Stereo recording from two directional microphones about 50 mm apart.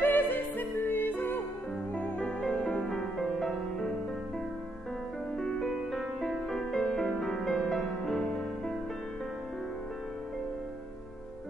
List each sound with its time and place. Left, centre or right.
0.0 s music: left
2.6 s music: centre
5.4 s music: centre